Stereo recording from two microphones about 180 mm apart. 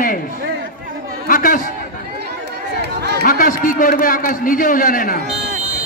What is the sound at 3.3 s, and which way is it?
A man's voice, 50° left (ahead or behind).